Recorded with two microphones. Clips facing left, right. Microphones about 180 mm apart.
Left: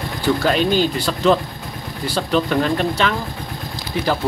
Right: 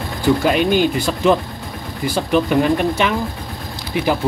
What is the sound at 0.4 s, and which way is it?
Speech, 15° right (ahead or behind).